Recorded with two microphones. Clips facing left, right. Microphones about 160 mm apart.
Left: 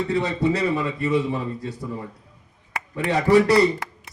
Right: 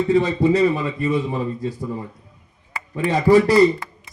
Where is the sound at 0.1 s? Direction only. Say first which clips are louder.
Right 7 dB; 70° left (ahead or behind).